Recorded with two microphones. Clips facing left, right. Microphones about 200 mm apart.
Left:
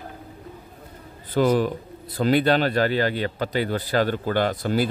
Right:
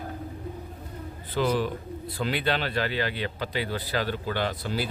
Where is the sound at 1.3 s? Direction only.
45° left (ahead or behind).